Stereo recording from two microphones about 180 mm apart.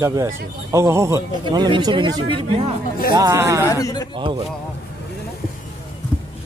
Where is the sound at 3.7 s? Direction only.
20° left (ahead or behind).